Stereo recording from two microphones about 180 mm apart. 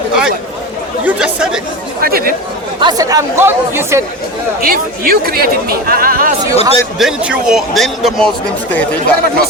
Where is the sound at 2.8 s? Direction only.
20° right (ahead or behind).